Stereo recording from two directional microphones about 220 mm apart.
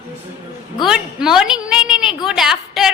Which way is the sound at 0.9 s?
Centre (ahead or behind).